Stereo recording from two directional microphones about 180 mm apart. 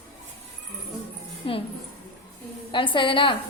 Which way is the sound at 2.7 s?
25° left (ahead or behind).